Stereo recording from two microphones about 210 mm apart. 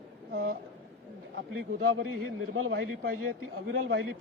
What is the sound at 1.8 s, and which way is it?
A man's voice, 80° right.